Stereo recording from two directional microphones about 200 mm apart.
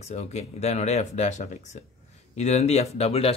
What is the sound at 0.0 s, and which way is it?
Speech, 35° left (ahead or behind).